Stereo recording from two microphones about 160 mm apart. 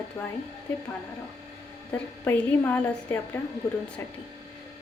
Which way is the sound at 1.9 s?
10° left (ahead or behind).